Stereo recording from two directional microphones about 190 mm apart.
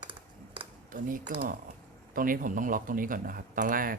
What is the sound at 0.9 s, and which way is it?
Speech, 45° right (ahead or behind).